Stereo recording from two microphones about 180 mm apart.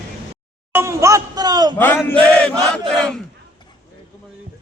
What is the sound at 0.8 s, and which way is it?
Speech, 15° right (ahead or behind).